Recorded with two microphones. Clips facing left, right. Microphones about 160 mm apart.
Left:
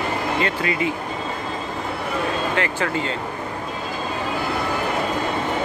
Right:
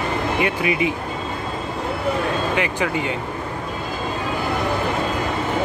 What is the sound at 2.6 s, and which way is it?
Speech, 15° right (ahead or behind).